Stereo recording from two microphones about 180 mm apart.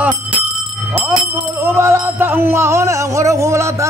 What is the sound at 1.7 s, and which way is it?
Music, 15° right (ahead or behind).